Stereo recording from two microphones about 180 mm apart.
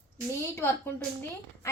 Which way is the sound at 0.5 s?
15° left (ahead or behind).